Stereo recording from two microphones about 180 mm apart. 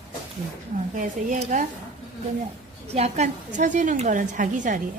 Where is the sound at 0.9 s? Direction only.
45° right (ahead or behind).